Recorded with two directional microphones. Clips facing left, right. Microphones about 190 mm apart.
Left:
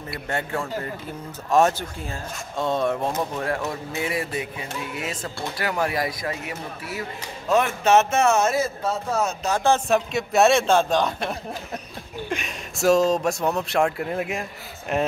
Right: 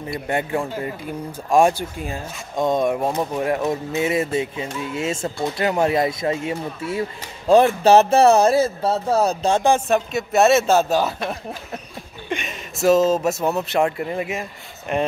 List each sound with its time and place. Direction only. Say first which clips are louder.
0.1 s speech: right 5 dB; 15° right (ahead or behind); by 9.6 s 35° right (ahead or behind)
9.6 s speech: even; 15° right (ahead or behind)
9.8 s speech: right 2 dB; centre (ahead or behind)
12.3 s speech: right 5 dB; centre (ahead or behind)